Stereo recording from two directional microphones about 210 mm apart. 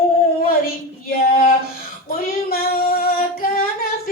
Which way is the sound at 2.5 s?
45° left (ahead or behind).